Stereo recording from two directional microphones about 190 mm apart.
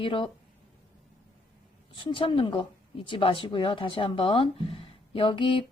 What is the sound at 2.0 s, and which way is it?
Speech, 25° left (ahead or behind).